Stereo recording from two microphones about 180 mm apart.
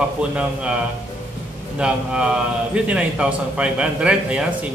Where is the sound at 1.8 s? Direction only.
5° right (ahead or behind).